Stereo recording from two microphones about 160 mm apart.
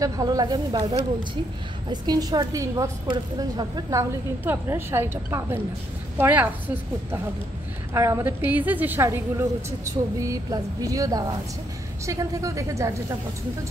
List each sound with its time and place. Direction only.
0.0 s a woman's voice: 20° right (ahead or behind)